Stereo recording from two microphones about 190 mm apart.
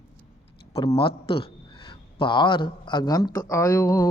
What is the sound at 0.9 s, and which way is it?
A man's voice, 25° left (ahead or behind).